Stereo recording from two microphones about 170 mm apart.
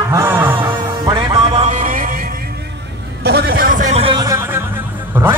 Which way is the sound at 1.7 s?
50° right (ahead or behind).